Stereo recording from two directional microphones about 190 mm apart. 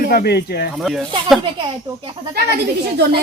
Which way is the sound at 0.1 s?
55° left (ahead or behind).